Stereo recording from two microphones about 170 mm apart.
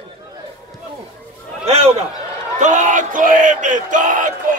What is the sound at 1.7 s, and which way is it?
A man's voice, 40° right (ahead or behind).